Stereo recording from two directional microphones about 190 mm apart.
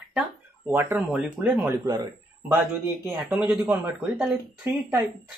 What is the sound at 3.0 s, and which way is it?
Speech, 5° right (ahead or behind).